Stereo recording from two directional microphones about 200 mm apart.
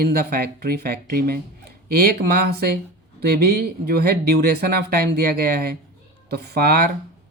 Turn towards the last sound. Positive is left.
turn(degrees=-50)  # may be behind; listen again after turning